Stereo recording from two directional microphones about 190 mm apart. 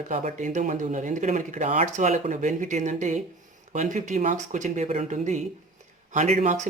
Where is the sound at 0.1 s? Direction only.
40° right (ahead or behind).